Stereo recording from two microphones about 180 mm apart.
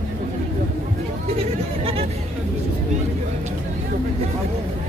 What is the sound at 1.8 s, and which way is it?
Chatter, 35° right (ahead or behind).